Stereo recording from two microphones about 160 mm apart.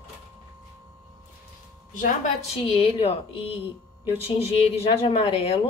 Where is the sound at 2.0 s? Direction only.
50° left (ahead or behind).